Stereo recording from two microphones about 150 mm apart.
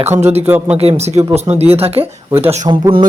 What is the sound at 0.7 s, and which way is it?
Speech, 45° right (ahead or behind).